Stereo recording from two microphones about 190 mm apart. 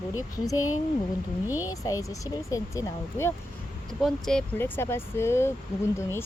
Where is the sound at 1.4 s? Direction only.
10° right (ahead or behind).